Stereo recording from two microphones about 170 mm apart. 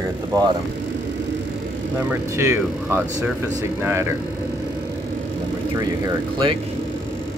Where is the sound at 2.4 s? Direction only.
15° right (ahead or behind).